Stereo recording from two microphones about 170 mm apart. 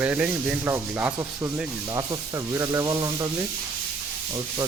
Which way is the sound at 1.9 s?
20° right (ahead or behind).